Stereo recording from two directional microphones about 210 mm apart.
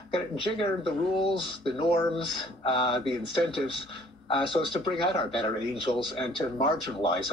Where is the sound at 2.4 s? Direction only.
25° left (ahead or behind).